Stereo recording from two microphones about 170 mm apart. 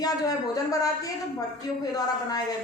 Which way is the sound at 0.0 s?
20° left (ahead or behind).